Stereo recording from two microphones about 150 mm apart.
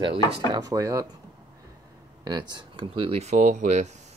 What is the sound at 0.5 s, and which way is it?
Speech, 25° right (ahead or behind).